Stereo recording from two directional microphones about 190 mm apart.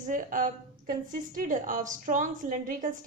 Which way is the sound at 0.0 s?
45° right (ahead or behind).